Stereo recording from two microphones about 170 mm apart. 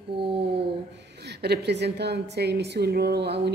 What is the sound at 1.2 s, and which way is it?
A woman's voice, 75° right (ahead or behind).